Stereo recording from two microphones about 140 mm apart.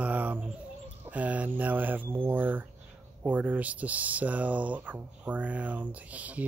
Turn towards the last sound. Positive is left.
turn(degrees=-10)  # may be behind; listen again after turning